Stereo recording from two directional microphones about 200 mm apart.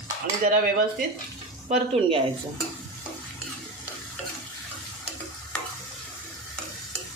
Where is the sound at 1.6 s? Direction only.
30° right (ahead or behind).